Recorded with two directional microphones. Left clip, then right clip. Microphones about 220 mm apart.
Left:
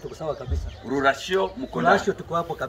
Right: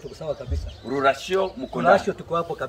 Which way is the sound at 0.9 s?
20° right (ahead or behind).